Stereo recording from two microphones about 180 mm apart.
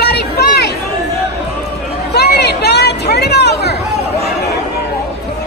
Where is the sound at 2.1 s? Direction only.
65° left (ahead or behind).